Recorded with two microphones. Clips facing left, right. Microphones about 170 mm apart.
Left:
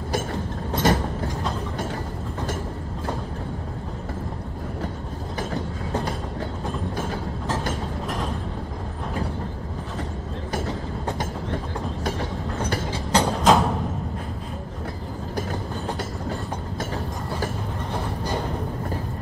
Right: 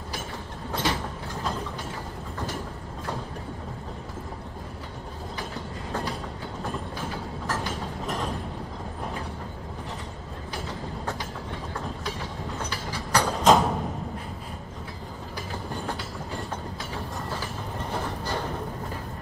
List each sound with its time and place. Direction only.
0.8 s train: 45° left (ahead or behind)
12.9 s a sound: 25° left (ahead or behind)
13.4 s music: centre (ahead or behind)